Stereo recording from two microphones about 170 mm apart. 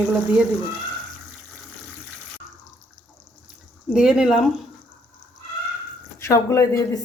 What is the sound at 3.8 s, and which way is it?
Speech, 5° right (ahead or behind).